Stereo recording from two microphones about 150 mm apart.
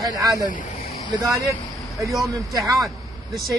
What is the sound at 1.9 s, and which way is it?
Speech, centre (ahead or behind).